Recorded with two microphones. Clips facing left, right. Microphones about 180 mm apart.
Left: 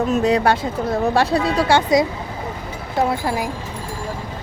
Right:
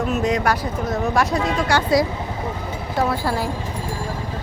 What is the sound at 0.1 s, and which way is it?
A woman's voice, 35° left (ahead or behind).